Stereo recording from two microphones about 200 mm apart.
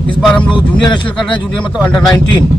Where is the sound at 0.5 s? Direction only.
25° left (ahead or behind).